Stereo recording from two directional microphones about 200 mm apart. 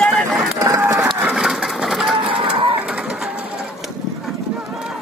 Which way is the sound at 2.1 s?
25° right (ahead or behind).